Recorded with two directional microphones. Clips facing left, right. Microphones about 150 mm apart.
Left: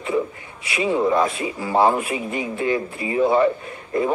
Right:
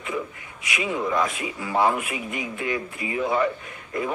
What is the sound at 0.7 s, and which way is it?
A man's voice, 30° left (ahead or behind).